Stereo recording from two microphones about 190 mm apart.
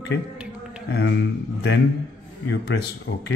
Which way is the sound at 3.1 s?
70° left (ahead or behind).